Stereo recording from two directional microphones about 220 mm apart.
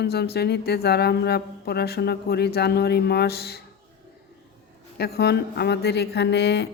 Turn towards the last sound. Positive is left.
turn(degrees=50)  # may be behind; listen again after turning